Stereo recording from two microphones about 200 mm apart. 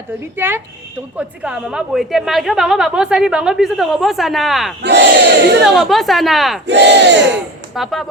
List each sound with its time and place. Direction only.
0.3 s a woman's voice: 10° right (ahead or behind)
4.8 s crowd: 60° right (ahead or behind)
5.6 s a woman's voice: centre (ahead or behind)
6.7 s crowd: 60° right (ahead or behind)
7.8 s a woman's voice: centre (ahead or behind)